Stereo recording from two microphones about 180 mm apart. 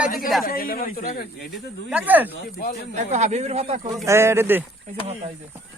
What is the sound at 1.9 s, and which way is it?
Speech, 10° right (ahead or behind).